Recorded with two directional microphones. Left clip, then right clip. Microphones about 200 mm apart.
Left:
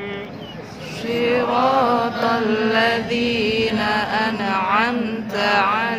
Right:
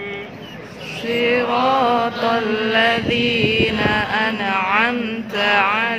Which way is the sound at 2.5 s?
5° right (ahead or behind).